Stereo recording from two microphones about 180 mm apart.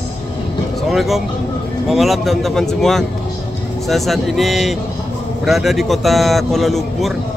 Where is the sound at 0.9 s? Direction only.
Centre (ahead or behind).